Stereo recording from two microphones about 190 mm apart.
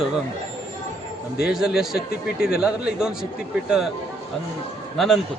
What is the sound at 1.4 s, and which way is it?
A man's voice, centre (ahead or behind).